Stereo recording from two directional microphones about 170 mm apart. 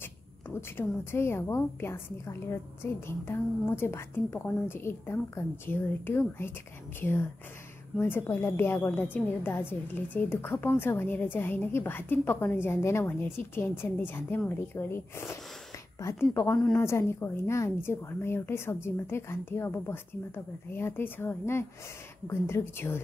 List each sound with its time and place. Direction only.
0.6 s a woman's voice: 15° left (ahead or behind)